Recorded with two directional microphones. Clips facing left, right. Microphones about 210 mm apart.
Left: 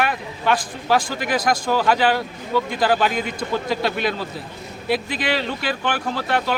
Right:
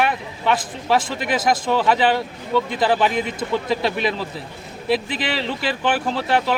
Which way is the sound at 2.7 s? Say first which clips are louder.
Left 1 dB; 25° right (ahead or behind).